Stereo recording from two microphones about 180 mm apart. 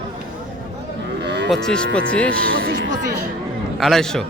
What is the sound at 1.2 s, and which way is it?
Cattle, 75° right (ahead or behind).